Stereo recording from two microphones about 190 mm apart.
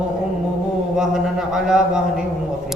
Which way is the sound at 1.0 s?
5° right (ahead or behind).